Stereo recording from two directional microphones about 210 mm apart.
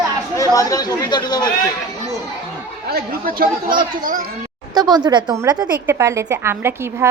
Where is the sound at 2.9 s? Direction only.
45° right (ahead or behind).